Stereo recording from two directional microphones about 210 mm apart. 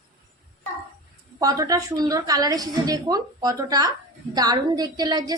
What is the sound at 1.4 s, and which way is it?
A woman's voice, 15° right (ahead or behind).